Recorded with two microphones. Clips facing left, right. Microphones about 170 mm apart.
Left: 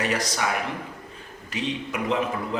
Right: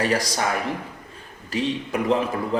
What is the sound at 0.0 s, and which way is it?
Speech, 35° right (ahead or behind).